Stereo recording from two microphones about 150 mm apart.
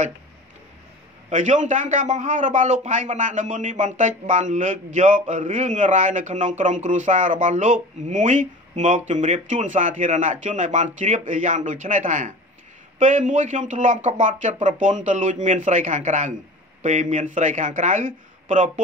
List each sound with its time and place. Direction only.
1.3 s a man's voice: 55° right (ahead or behind)